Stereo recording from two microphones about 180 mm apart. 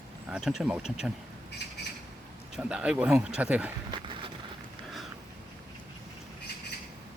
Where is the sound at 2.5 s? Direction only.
5° right (ahead or behind).